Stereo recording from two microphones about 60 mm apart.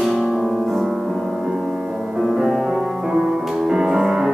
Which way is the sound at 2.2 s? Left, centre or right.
Centre.